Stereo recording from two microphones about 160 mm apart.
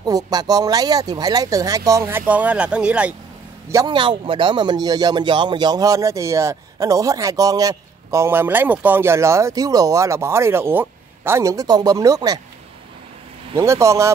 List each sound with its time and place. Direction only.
0.0 s speech: 25° right (ahead or behind); by 3.2 s 5° right (ahead or behind)
3.6 s speech: 25° right (ahead or behind)
13.6 s speech: 20° right (ahead or behind)